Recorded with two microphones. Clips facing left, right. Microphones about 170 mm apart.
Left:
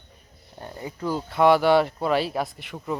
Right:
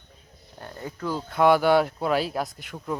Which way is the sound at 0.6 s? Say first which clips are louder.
Left 2 dB; 15° left (ahead or behind).